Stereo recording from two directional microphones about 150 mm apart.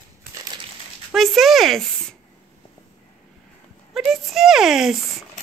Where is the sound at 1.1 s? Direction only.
Centre (ahead or behind).